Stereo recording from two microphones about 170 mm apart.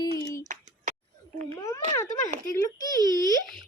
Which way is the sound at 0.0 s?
20° left (ahead or behind).